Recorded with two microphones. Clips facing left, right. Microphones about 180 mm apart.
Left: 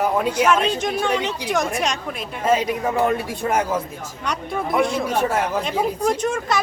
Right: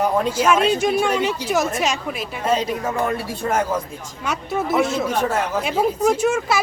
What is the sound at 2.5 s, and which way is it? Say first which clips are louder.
Speech: left 2 dB; 10° left (ahead or behind).